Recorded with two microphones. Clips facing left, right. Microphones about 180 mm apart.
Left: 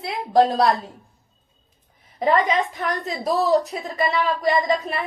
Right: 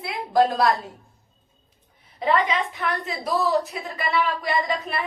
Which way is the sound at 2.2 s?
40° left (ahead or behind).